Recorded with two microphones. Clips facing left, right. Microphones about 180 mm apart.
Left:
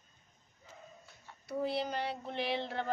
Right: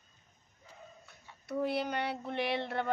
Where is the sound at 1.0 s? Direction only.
60° right (ahead or behind).